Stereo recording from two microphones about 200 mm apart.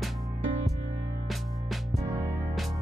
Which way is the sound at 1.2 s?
Centre (ahead or behind).